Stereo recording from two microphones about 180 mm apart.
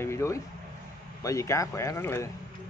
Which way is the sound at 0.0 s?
15° left (ahead or behind).